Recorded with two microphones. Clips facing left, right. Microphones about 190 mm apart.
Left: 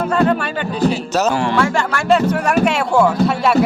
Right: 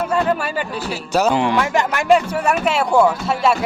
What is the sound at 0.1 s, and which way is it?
Speech, 5° right (ahead or behind).